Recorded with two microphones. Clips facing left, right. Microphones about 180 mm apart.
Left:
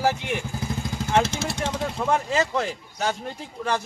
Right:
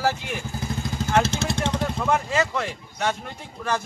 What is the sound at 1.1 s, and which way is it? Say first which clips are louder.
Vehicle: even; 15° left (ahead or behind).